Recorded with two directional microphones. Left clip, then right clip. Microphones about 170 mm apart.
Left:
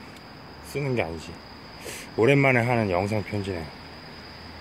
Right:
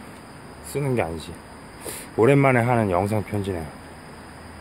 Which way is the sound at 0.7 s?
10° right (ahead or behind).